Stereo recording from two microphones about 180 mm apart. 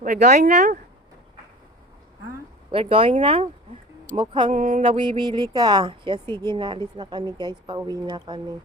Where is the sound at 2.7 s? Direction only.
30° right (ahead or behind).